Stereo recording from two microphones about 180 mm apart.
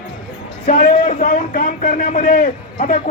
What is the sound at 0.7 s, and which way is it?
A man's voice, 50° left (ahead or behind).